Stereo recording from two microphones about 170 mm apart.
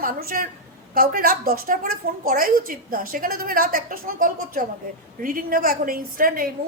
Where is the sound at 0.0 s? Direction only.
60° right (ahead or behind).